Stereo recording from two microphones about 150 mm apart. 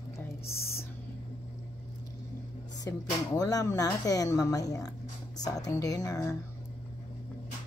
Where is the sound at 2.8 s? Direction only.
25° left (ahead or behind).